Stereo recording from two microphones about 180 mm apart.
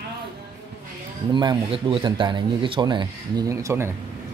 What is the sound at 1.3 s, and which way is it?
Speech, 25° right (ahead or behind).